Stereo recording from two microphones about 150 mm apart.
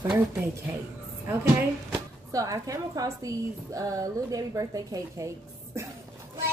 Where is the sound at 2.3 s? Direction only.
25° right (ahead or behind).